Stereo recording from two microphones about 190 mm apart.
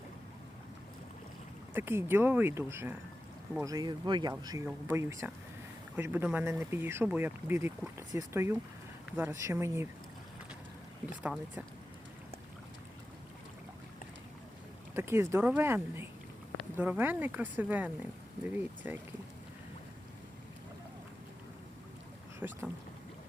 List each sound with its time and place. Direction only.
1.7 s speech: 10° right (ahead or behind)
11.2 s speech: 5° right (ahead or behind)
14.9 s speech: 15° right (ahead or behind)
22.4 s speech: 10° right (ahead or behind)